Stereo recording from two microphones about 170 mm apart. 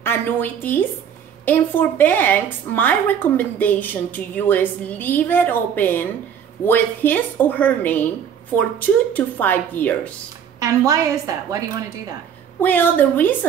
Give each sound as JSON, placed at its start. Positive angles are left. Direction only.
{"t": 0.0, "sound": "a woman's voice", "side_deg": 10}
{"t": 10.6, "sound": "a woman's voice", "side_deg": -20}
{"t": 12.6, "sound": "a woman's voice", "side_deg": 10}